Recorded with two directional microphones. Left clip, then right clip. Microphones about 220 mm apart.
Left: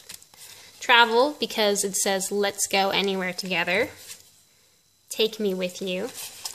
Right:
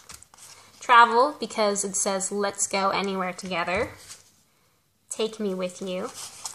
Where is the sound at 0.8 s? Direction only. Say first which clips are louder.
Right 1 dB; 45° left (ahead or behind).